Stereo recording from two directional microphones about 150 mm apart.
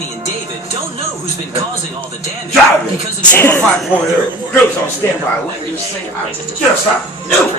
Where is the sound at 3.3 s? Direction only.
15° left (ahead or behind).